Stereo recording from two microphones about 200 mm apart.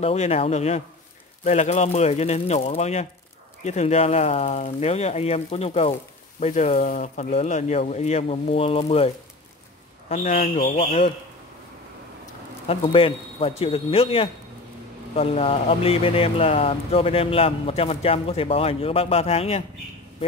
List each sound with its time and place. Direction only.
0.0 s speech: 30° left (ahead or behind)
12.6 s speech: 30° left (ahead or behind)